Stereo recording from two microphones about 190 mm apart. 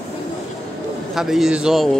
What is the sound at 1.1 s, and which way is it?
Speech, centre (ahead or behind).